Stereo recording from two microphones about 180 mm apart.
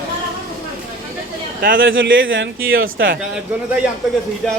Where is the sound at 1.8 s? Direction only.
90° right.